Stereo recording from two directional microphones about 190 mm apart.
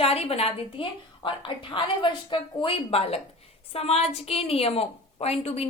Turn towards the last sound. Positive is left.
turn(degrees=30)  # may be behind; listen again after turning